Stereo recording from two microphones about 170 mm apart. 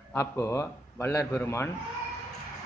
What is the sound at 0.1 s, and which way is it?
A man's voice, 15° left (ahead or behind).